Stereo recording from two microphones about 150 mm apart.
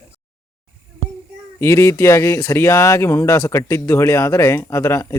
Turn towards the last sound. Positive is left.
turn(degrees=20)  # may be behind; listen again after turning